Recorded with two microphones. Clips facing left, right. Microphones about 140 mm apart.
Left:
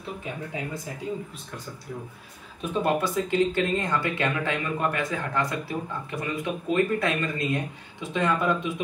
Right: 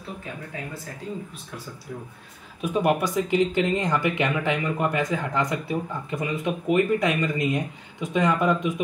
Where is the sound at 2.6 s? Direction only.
15° right (ahead or behind).